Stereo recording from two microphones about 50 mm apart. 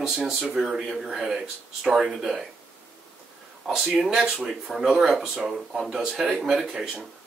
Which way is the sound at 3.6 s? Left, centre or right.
Centre.